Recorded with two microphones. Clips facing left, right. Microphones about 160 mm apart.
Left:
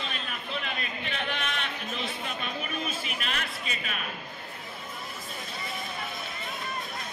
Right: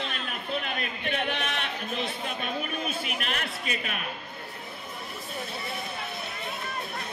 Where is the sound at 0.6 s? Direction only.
50° right (ahead or behind).